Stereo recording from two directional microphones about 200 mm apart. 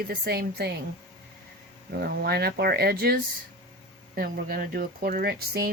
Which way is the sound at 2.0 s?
50° right (ahead or behind).